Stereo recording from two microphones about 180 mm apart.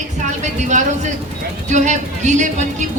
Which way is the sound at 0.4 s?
40° right (ahead or behind).